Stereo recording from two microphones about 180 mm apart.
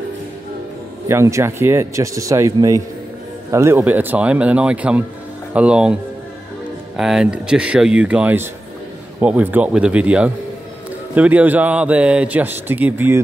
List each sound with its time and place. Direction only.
1.0 s speech: 15° right (ahead or behind)
7.0 s speech: 5° right (ahead or behind)